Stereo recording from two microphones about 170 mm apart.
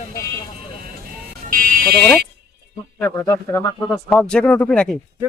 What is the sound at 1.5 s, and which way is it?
Buzzer, 55° right (ahead or behind).